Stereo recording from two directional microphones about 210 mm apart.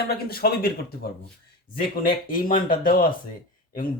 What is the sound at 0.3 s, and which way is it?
Speech, 45° left (ahead or behind).